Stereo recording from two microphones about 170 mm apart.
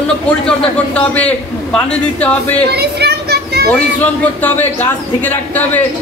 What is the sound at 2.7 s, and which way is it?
Children playing, 70° right (ahead or behind).